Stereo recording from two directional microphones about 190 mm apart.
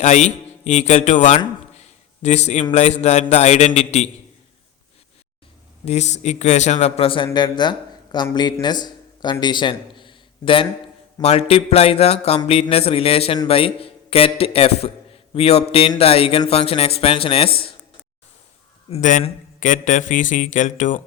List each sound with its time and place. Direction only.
0.0 s speech: 35° left (ahead or behind)
1.8 s a sound: 35° left (ahead or behind)
2.7 s a man's voice: 35° left (ahead or behind)
5.8 s a man's voice: 35° left (ahead or behind)
18.9 s a man's voice: 40° left (ahead or behind)